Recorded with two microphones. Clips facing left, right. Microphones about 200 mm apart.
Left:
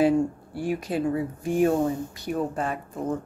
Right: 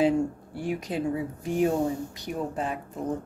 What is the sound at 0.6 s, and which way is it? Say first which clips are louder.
A woman's voice: left 3 dB; 20° right (ahead or behind).